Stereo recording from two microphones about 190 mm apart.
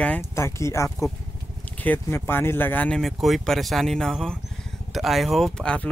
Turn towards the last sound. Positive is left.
turn(degrees=5)  # may be behind; listen again after turning